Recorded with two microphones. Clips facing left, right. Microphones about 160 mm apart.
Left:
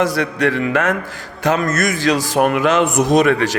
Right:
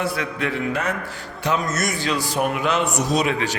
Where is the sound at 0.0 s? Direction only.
85° left.